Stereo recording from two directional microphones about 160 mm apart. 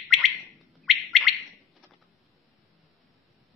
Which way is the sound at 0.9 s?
Centre (ahead or behind).